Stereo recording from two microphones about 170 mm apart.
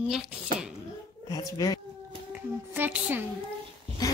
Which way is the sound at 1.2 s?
20° left (ahead or behind).